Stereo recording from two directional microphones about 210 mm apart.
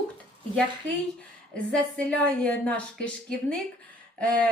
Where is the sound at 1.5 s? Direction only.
5° left (ahead or behind).